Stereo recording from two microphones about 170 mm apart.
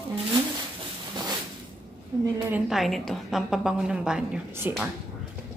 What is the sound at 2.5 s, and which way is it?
A woman's voice, centre (ahead or behind).